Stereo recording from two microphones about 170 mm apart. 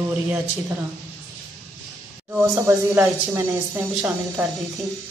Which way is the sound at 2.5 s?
15° right (ahead or behind).